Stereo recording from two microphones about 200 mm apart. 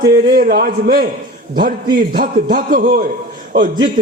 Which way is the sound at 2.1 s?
45° right (ahead or behind).